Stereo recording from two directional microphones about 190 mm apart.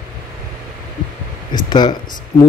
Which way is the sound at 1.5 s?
25° left (ahead or behind).